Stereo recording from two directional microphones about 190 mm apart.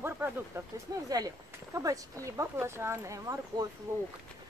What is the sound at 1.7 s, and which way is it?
Speech, 15° right (ahead or behind).